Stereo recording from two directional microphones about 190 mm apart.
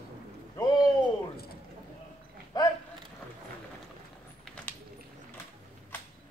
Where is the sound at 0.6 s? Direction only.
20° left (ahead or behind).